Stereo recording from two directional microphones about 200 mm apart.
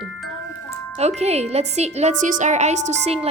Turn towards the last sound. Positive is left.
turn(degrees=-30)  # may be behind; listen again after turning